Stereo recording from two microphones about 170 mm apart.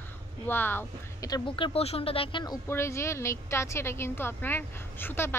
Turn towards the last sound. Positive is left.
turn(degrees=15)  # may be behind; listen again after turning